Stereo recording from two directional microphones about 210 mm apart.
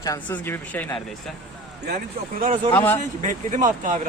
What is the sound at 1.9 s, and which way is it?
Speech, 40° right (ahead or behind).